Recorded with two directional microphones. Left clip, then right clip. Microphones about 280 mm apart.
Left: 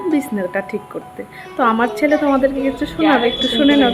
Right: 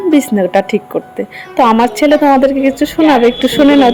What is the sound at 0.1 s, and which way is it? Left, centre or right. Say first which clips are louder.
Speech: right 10 dB; right.